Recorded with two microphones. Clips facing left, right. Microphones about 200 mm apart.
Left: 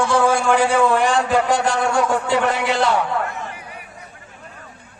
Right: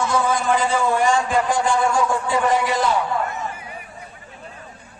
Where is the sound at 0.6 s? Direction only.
75° left (ahead or behind).